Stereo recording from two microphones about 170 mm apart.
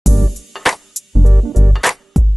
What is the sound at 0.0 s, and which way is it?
Music, centre (ahead or behind).